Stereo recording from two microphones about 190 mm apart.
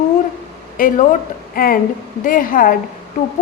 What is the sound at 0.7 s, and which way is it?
A woman's voice, 45° left (ahead or behind).